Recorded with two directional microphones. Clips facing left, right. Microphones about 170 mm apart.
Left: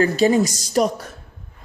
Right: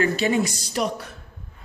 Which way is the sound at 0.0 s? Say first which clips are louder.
Left 5 dB; 40° left (ahead or behind).